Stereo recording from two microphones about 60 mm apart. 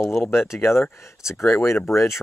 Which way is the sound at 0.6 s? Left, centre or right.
Left.